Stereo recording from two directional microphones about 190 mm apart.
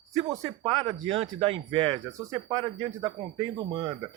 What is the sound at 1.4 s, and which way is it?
Speech, 30° right (ahead or behind).